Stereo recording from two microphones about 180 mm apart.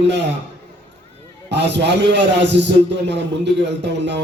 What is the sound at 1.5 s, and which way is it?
A man's voice, 75° right (ahead or behind).